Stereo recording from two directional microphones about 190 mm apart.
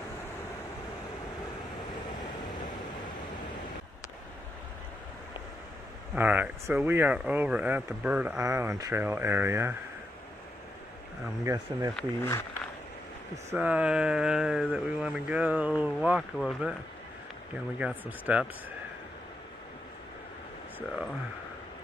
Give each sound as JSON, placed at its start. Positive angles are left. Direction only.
{"t": 6.1, "sound": "speech", "side_deg": -10}
{"t": 11.4, "sound": "speech", "side_deg": -15}
{"t": 12.2, "sound": "speech", "side_deg": 15}
{"t": 13.5, "sound": "speech", "side_deg": -5}
{"t": 17.7, "sound": "speech", "side_deg": -5}